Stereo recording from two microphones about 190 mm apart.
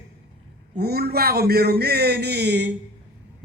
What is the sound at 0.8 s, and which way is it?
A man's voice, 55° right (ahead or behind).